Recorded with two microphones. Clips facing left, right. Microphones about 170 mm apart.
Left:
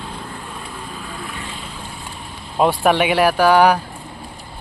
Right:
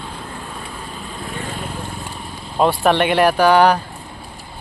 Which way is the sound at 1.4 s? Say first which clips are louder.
Right 5 dB; 45° right (ahead or behind).